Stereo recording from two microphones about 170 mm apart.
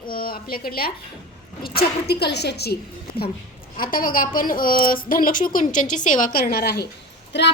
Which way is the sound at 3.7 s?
55° left (ahead or behind).